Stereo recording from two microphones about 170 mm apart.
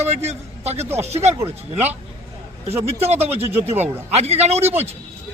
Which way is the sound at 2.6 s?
35° right (ahead or behind).